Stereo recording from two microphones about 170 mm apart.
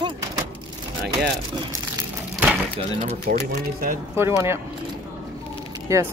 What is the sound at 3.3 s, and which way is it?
Speech, 50° right (ahead or behind).